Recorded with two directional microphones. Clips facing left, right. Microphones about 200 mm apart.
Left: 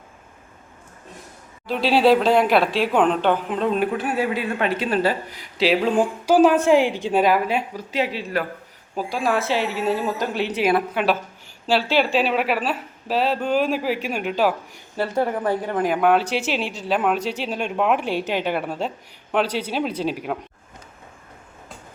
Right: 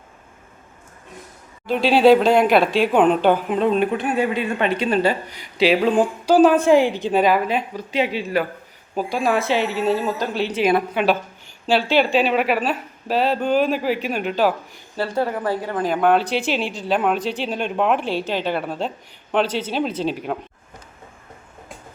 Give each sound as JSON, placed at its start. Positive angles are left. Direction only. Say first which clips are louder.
{"t": 1.6, "sound": "a woman's voice", "louder": "right 3 dB", "side_deg": 0}
{"t": 10.7, "sound": "speech", "louder": "right 2 dB", "side_deg": 0}
{"t": 14.9, "sound": "a woman's voice", "louder": "even", "side_deg": 15}
{"t": 17.9, "sound": "a woman's voice", "louder": "even", "side_deg": 10}